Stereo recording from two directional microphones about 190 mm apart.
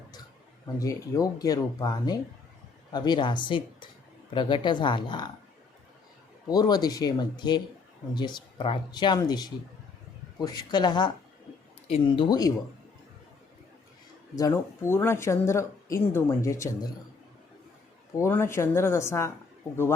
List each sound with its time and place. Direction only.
0.8 s speech: 20° left (ahead or behind)
6.5 s speech: 20° left (ahead or behind)
14.3 s speech: 15° left (ahead or behind)
18.2 s speech: 15° left (ahead or behind)